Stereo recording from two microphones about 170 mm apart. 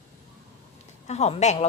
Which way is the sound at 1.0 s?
40° left (ahead or behind).